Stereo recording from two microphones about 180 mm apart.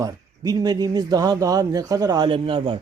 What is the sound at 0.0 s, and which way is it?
Speech, 20° right (ahead or behind).